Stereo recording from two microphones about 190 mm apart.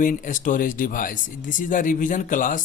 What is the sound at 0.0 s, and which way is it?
Speech, 45° left (ahead or behind).